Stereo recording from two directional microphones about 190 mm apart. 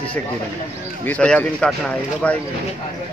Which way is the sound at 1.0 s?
5° left (ahead or behind).